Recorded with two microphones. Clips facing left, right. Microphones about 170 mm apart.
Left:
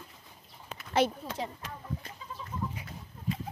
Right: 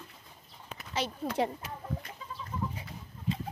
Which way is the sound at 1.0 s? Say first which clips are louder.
Left 9 dB; 55° left (ahead or behind).